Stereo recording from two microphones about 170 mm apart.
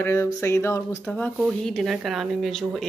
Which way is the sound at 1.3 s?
Centre (ahead or behind).